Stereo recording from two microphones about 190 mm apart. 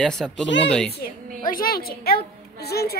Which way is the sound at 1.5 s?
50° left (ahead or behind).